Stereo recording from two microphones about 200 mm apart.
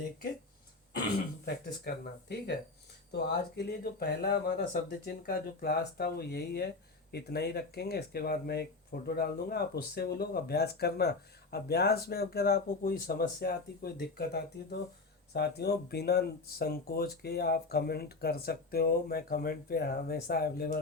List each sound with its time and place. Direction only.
1.5 s speech: 50° left (ahead or behind)